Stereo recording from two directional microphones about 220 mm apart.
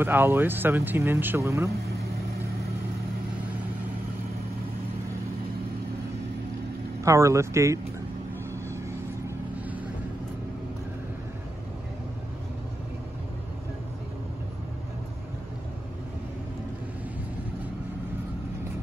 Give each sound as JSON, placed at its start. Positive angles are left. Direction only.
{"t": 0.0, "sound": "speech", "side_deg": -10}
{"t": 7.0, "sound": "speech", "side_deg": -15}